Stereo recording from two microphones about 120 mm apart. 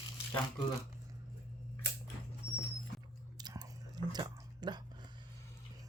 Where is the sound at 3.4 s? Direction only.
35° right (ahead or behind).